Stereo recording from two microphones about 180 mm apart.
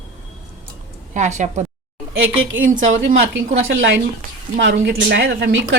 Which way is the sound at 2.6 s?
45° right (ahead or behind).